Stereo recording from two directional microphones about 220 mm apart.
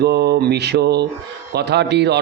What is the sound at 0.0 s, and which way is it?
A man's voice, 50° right (ahead or behind).